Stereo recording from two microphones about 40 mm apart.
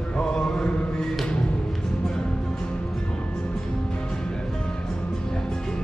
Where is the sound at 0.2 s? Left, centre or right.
Left.